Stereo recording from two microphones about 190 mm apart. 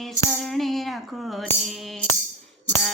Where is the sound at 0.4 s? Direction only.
Centre (ahead or behind).